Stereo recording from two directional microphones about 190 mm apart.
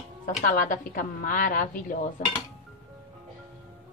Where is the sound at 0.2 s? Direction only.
40° left (ahead or behind).